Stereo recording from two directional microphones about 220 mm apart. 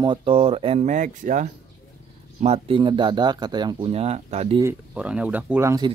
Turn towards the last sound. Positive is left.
turn(degrees=-15)  # may be behind; listen again after turning